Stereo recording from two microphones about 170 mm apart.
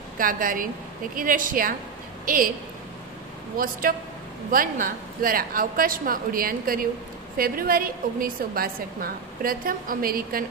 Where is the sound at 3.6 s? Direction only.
55° right (ahead or behind).